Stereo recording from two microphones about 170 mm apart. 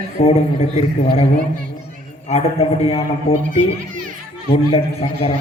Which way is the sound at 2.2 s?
40° left (ahead or behind).